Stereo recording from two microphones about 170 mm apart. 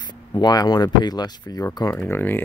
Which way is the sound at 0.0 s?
25° left (ahead or behind).